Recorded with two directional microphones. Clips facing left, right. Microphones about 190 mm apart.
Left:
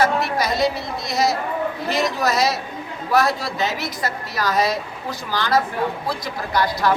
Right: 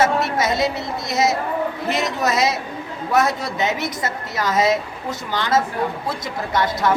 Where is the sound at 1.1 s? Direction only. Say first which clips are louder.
Right 1 dB; 20° right (ahead or behind).